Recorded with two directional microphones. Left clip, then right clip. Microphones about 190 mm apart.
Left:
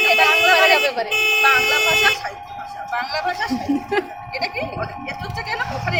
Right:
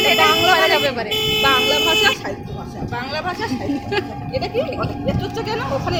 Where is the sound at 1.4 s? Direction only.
40° left (ahead or behind).